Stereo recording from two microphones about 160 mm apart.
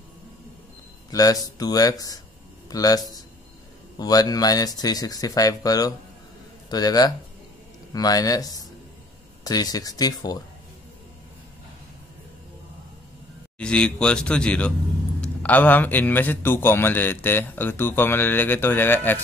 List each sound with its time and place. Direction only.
1.1 s speech: 25° left (ahead or behind)
13.6 s a man's voice: 5° left (ahead or behind)